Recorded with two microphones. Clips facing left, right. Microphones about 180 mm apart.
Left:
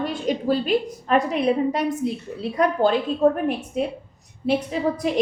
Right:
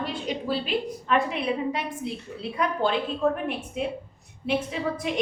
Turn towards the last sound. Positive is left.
turn(degrees=40)  # may be behind; listen again after turning